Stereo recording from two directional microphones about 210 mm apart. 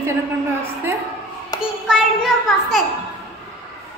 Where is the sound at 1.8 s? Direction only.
Centre (ahead or behind).